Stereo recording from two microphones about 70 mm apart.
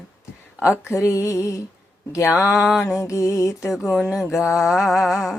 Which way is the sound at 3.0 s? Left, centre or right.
Left.